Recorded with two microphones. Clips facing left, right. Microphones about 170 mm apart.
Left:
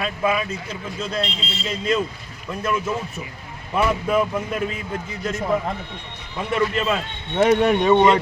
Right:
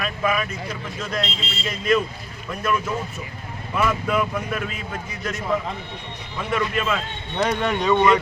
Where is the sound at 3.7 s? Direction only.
30° left (ahead or behind).